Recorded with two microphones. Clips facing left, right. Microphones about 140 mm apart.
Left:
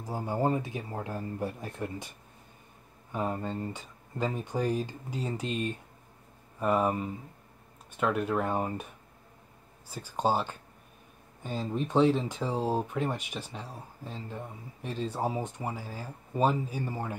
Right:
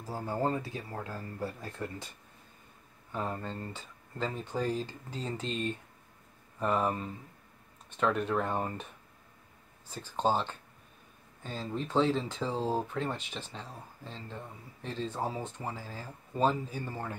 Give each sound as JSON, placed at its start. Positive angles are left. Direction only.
{"t": 0.0, "sound": "speech", "side_deg": 15}
{"t": 3.1, "sound": "speech", "side_deg": 15}
{"t": 9.8, "sound": "speech", "side_deg": 10}